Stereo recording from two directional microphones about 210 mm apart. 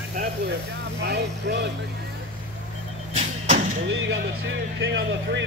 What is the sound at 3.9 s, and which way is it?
Music, 55° right (ahead or behind).